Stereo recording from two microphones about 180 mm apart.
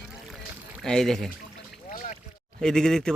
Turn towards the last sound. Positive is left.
turn(degrees=5)  # may be behind; listen again after turning